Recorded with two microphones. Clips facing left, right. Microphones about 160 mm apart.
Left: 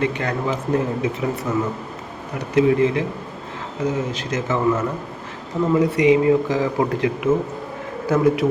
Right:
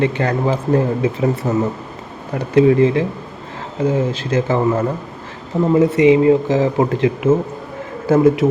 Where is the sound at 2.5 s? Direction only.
30° right (ahead or behind).